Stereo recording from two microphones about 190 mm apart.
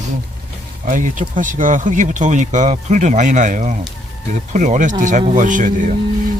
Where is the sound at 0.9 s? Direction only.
45° right (ahead or behind).